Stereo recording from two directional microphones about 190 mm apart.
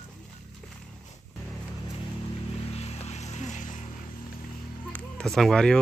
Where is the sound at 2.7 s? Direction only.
35° left (ahead or behind).